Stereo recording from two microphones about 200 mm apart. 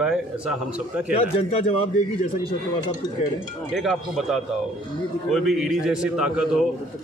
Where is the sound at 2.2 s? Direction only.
30° left (ahead or behind).